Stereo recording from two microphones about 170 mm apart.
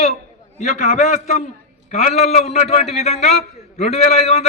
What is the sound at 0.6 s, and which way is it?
A man's voice, 45° left (ahead or behind).